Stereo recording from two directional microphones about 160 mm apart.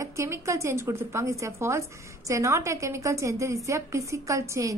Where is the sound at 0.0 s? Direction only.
20° right (ahead or behind).